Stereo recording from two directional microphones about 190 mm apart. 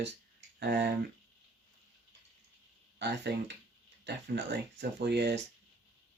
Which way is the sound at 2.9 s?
65° right (ahead or behind).